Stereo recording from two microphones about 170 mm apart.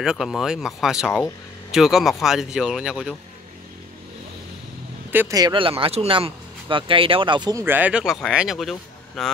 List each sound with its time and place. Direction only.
0.0 s speech: 5° right (ahead or behind)
5.3 s speech: 25° right (ahead or behind); by 9.3 s centre (ahead or behind)